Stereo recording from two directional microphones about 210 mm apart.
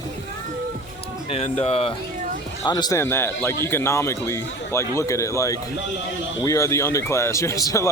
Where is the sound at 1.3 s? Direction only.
30° left (ahead or behind).